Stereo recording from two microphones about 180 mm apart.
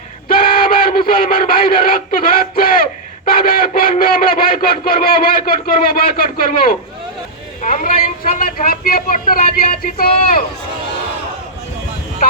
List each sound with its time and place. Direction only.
0.3 s speech: 55° left (ahead or behind)